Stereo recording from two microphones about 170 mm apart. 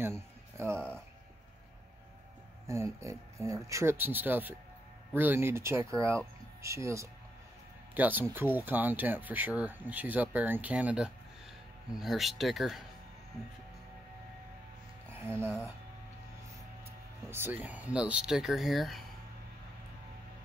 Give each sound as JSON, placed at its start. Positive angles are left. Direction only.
{"t": 0.0, "sound": "music", "side_deg": -15}
{"t": 0.7, "sound": "speech", "side_deg": 5}
{"t": 2.6, "sound": "speech", "side_deg": -15}
{"t": 15.1, "sound": "speech", "side_deg": -15}
{"t": 17.3, "sound": "speech", "side_deg": -10}